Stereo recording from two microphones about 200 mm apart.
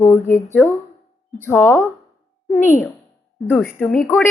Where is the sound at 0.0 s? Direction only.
15° left (ahead or behind).